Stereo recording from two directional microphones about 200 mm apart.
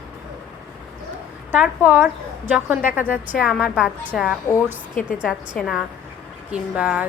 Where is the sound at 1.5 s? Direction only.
10° right (ahead or behind).